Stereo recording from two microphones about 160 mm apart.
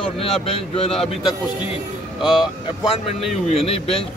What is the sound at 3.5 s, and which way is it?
Speech, 40° left (ahead or behind).